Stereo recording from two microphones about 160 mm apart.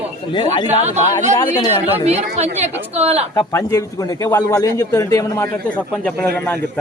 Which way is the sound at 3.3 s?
20° left (ahead or behind).